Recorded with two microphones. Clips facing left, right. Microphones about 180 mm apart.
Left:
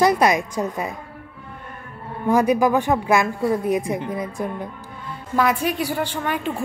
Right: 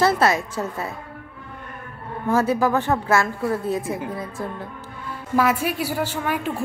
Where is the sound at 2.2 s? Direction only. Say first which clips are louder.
Left 3 dB; 15° left (ahead or behind).